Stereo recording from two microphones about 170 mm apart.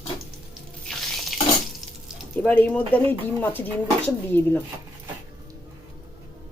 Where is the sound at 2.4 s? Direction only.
10° left (ahead or behind).